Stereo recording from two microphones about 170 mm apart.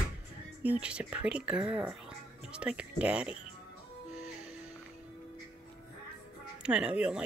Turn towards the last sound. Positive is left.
turn(degrees=-5)  # may be behind; listen again after turning